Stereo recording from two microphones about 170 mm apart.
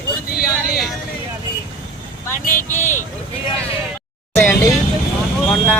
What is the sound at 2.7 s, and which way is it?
Speech, 45° left (ahead or behind).